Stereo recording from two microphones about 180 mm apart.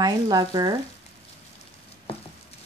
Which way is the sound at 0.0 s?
20° right (ahead or behind).